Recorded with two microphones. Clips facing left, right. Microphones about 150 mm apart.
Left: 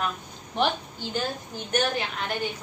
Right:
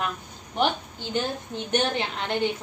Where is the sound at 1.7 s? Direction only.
25° right (ahead or behind).